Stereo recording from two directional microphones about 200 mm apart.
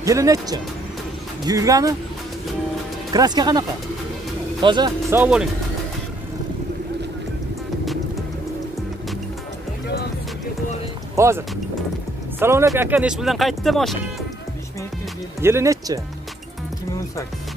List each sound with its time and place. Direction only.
0.0 s speech: 15° right (ahead or behind)
3.1 s speech: 20° right (ahead or behind)
5.1 s speech: 5° right (ahead or behind)
11.1 s speech: 15° right (ahead or behind)
15.4 s speech: 15° right (ahead or behind)